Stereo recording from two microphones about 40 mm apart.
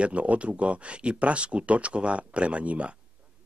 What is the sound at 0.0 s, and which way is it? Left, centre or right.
Speech, right.